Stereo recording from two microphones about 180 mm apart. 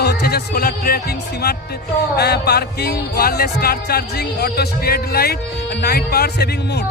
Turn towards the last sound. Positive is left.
turn(degrees=60)  # may be behind; listen again after turning